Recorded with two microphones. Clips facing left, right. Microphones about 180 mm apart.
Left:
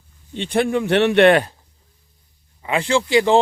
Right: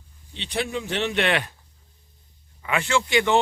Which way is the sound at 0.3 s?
50° left (ahead or behind).